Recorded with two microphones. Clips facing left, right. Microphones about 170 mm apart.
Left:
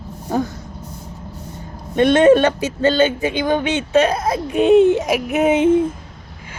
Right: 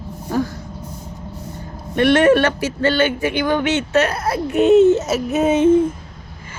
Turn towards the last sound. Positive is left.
turn(degrees=15)  # may be behind; listen again after turning